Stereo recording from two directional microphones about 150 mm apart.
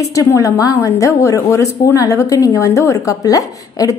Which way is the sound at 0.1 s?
20° left (ahead or behind).